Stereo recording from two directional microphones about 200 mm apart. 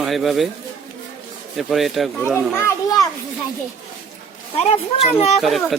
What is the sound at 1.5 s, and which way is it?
Speech, centre (ahead or behind).